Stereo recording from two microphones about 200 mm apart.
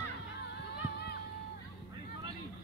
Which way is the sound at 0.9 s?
55° left (ahead or behind).